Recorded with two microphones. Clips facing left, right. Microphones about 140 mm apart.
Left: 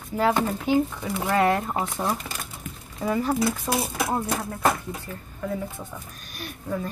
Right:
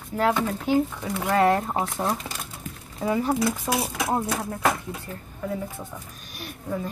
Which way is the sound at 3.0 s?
5° right (ahead or behind).